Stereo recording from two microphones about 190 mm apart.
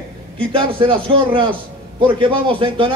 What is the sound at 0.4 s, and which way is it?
A man's voice, 30° right (ahead or behind).